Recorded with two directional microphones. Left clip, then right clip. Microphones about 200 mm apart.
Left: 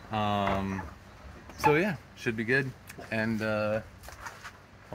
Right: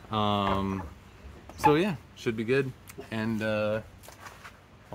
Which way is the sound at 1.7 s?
25° right (ahead or behind).